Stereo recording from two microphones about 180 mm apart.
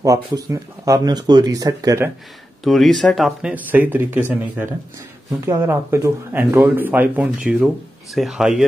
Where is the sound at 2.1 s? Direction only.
Centre (ahead or behind).